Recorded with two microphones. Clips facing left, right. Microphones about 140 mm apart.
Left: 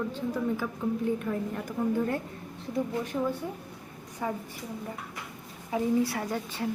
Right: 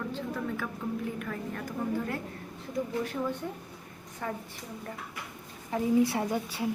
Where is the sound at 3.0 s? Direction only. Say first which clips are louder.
Left 2 dB; 20° left (ahead or behind).